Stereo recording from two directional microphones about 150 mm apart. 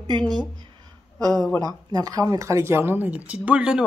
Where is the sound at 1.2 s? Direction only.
5° left (ahead or behind).